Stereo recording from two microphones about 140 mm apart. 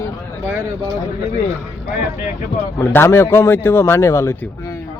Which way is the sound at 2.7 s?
20° left (ahead or behind).